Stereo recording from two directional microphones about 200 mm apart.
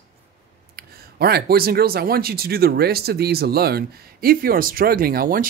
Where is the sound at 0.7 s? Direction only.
50° right (ahead or behind).